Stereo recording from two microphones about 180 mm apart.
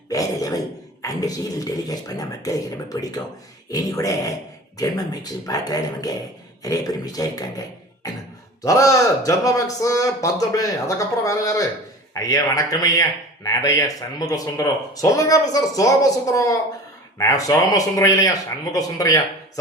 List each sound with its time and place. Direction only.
0.1 s a sound: 20° left (ahead or behind)
1.0 s speech: 20° left (ahead or behind)
8.6 s a man's voice: 15° left (ahead or behind)